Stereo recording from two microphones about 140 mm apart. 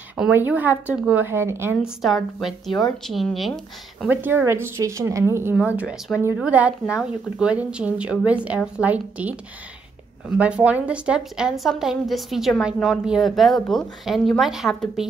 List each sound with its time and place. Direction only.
0.3 s a woman's voice: 15° right (ahead or behind)
2.0 s a woman's voice: centre (ahead or behind)
4.1 s a woman's voice: 15° right (ahead or behind)
10.3 s a woman's voice: 10° right (ahead or behind)